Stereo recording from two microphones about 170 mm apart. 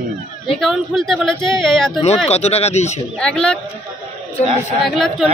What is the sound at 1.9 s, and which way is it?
Speech, 40° left (ahead or behind).